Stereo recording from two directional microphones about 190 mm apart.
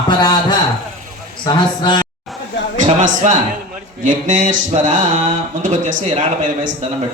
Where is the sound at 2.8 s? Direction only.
40° right (ahead or behind).